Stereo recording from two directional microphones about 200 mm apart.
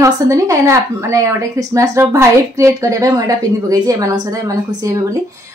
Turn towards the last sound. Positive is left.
turn(degrees=-15)  # may be behind; listen again after turning